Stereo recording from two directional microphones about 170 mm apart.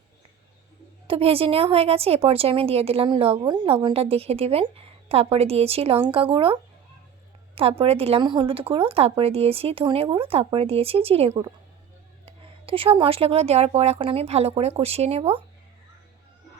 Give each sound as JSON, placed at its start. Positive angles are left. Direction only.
{"t": 1.0, "sound": "a woman's voice", "side_deg": -35}